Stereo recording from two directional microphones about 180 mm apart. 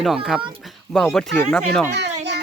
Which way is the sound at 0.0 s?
Centre (ahead or behind).